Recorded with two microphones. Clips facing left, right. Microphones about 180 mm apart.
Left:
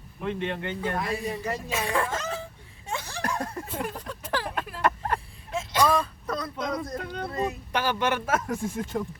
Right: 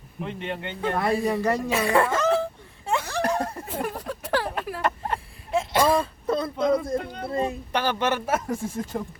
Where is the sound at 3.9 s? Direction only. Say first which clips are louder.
Right 5 dB; 65° right (ahead or behind).